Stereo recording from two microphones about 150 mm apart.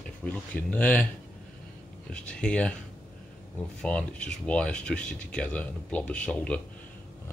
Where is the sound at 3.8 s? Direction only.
10° left (ahead or behind).